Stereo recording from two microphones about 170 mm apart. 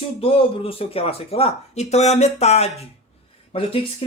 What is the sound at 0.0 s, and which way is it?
Speech, 35° left (ahead or behind).